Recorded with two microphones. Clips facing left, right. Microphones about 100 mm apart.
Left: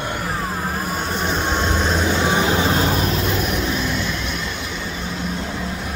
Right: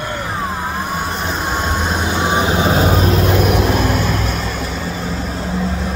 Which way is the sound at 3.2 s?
65° right (ahead or behind).